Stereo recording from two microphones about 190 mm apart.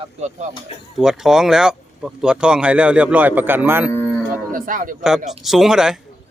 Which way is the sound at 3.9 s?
10° left (ahead or behind).